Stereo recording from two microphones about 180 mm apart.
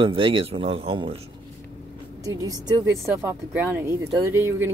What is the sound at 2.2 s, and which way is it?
A woman's voice, 20° right (ahead or behind).